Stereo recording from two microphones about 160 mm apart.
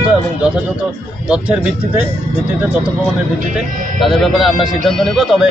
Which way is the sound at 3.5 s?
Centre (ahead or behind).